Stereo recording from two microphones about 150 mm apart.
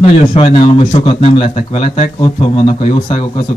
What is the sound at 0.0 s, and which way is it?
A man's voice, 45° left (ahead or behind).